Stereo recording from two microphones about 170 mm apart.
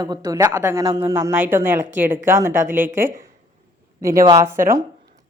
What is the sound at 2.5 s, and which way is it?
Speech, 50° right (ahead or behind).